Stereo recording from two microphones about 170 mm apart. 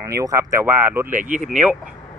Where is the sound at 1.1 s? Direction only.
50° right (ahead or behind).